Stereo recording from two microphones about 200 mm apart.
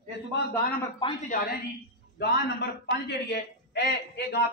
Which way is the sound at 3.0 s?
55° left (ahead or behind).